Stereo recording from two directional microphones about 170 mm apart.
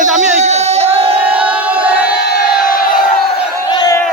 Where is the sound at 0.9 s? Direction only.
35° right (ahead or behind).